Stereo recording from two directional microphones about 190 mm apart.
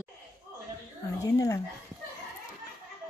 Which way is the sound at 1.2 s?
15° left (ahead or behind).